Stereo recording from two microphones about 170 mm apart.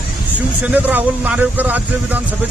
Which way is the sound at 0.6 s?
10° right (ahead or behind).